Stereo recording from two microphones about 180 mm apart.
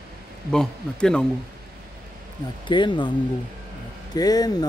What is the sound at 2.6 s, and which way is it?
Speech, 25° left (ahead or behind).